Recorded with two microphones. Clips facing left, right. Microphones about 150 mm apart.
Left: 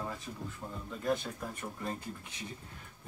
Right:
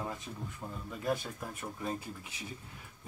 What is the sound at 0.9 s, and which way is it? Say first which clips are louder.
Speech: left 1 dB; 10° right (ahead or behind).